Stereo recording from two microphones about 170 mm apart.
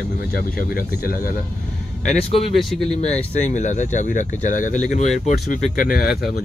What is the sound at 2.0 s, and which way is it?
Speech, 40° left (ahead or behind).